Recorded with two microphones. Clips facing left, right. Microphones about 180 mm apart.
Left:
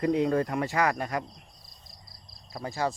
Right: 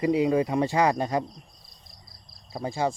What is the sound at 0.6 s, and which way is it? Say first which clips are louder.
Speech: right 4 dB; 25° right (ahead or behind).